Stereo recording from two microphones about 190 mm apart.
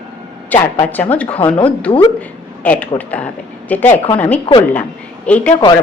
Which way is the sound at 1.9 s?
20° left (ahead or behind).